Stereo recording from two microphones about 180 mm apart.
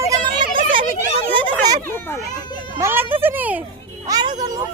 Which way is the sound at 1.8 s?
10° left (ahead or behind).